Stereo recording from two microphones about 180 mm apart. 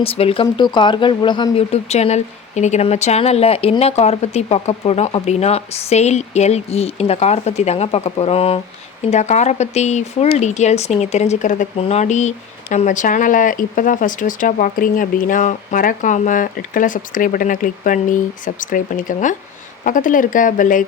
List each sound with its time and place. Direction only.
0.0 s speech: 30° left (ahead or behind); by 20.8 s 45° left (ahead or behind)